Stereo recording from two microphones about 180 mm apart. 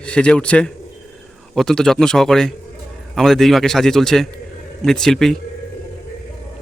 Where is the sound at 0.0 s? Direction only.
5° left (ahead or behind).